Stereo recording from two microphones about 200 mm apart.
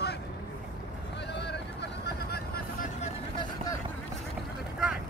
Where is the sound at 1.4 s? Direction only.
55° left (ahead or behind).